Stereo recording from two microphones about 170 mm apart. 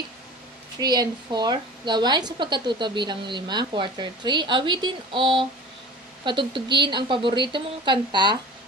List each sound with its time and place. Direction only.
0.7 s a woman's voice: 25° right (ahead or behind)